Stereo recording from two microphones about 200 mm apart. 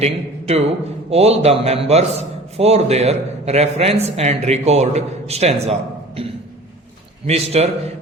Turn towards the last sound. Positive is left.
turn(degrees=-30)  # may be behind; listen again after turning